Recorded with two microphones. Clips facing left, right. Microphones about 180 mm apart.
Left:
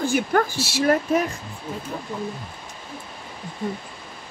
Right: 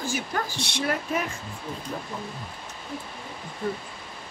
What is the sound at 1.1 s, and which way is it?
Speech, 40° left (ahead or behind).